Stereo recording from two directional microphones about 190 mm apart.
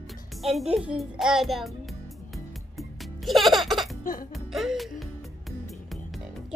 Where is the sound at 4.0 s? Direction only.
45° left (ahead or behind).